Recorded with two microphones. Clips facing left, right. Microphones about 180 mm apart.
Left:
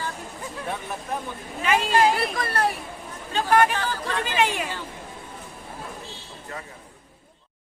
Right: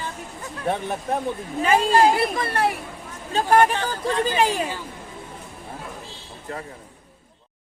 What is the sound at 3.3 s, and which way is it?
Speech, 30° right (ahead or behind).